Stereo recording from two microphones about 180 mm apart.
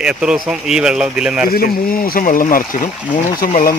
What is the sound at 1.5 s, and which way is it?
Speech, 55° left (ahead or behind).